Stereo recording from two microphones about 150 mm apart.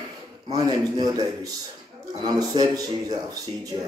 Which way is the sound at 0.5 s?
25° right (ahead or behind).